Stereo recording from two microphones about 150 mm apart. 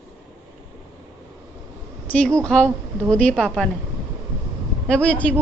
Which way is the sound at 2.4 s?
10° left (ahead or behind).